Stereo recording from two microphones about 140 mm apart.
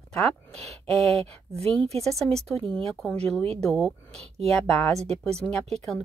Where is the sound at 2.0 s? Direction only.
Centre (ahead or behind).